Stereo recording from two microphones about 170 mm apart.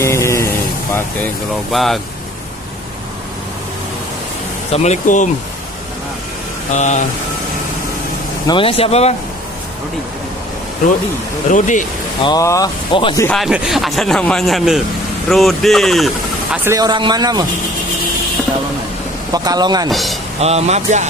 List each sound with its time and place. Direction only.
0.0 s a sound: 15° left (ahead or behind)
1.7 s speech: centre (ahead or behind)
4.7 s speech: 45° left (ahead or behind)
6.7 s speech: 45° left (ahead or behind)
8.5 s speech: 30° left (ahead or behind)
11.5 s speech: 50° left (ahead or behind)
12.3 s speech: 20° left (ahead or behind)
13.4 s speech: centre (ahead or behind)
16.6 s a man's voice: 20° right (ahead or behind)
19.3 s a man's voice: 20° right (ahead or behind)
19.9 s speech: centre (ahead or behind)
20.3 s speech: 40° right (ahead or behind)